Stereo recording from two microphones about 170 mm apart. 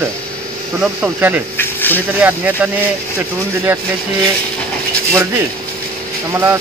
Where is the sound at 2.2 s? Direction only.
10° right (ahead or behind).